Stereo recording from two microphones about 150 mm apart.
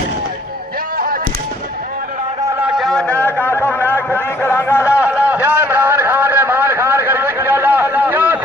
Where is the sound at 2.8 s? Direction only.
5° left (ahead or behind).